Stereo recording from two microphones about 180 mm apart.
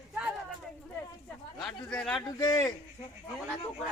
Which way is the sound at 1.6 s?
10° left (ahead or behind).